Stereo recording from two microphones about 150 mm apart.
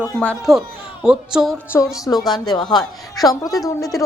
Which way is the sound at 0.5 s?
5° right (ahead or behind).